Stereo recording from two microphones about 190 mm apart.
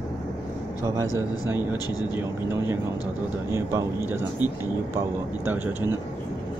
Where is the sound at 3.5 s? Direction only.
15° right (ahead or behind).